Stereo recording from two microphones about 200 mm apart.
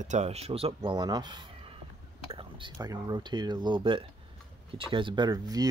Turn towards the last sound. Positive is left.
turn(degrees=-20)  # may be behind; listen again after turning